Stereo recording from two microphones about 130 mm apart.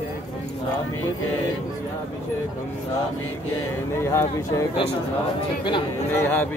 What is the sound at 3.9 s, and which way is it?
Speech, 20° left (ahead or behind).